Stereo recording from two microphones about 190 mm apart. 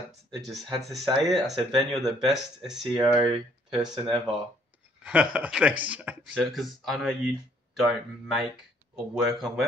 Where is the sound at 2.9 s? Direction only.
20° right (ahead or behind).